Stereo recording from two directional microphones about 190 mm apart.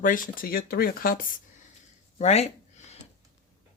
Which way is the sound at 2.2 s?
35° left (ahead or behind).